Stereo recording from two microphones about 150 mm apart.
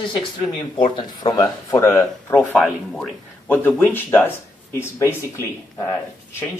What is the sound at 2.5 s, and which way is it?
Speech, centre (ahead or behind).